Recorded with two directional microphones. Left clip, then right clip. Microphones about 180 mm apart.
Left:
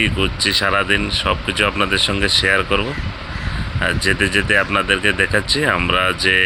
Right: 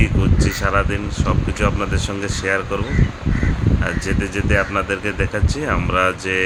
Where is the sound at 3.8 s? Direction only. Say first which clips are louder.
Left 9 dB; 20° left (ahead or behind).